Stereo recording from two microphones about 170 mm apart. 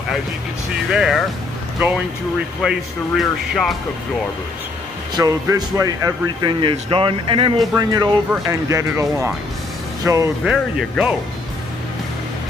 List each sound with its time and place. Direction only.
0.8 s speech: centre (ahead or behind)
2.6 s speech: centre (ahead or behind)
5.1 s speech: 20° right (ahead or behind)
10.4 s speech: 5° right (ahead or behind)